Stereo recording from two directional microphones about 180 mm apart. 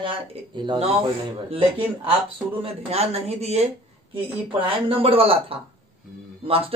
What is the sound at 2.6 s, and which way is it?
A man's voice, 35° right (ahead or behind).